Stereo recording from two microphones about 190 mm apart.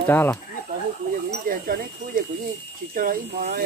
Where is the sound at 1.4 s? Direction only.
50° right (ahead or behind).